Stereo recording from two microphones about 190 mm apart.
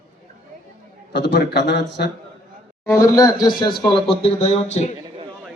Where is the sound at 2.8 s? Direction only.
15° left (ahead or behind); by 4.9 s 35° left (ahead or behind).